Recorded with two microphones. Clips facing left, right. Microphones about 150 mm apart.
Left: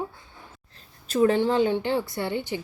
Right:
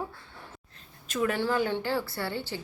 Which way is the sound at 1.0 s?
35° left (ahead or behind).